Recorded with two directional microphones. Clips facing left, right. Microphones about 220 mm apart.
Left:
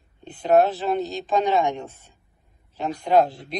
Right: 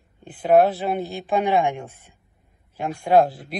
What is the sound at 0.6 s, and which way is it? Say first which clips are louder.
Speech: even; 10° right (ahead or behind).